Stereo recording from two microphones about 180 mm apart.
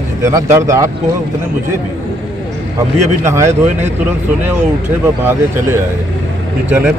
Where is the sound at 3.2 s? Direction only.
15° right (ahead or behind).